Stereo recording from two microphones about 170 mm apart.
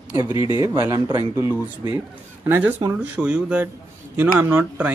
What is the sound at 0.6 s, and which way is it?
A man's voice, 15° right (ahead or behind).